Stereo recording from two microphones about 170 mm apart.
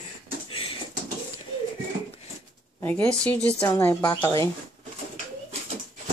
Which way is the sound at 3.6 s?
20° left (ahead or behind).